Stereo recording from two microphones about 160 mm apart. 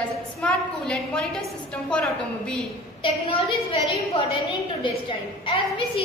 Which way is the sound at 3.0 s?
35° left (ahead or behind).